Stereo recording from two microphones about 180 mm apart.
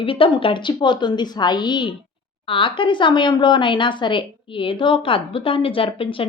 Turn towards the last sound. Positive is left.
turn(degrees=30)  # may be behind; listen again after turning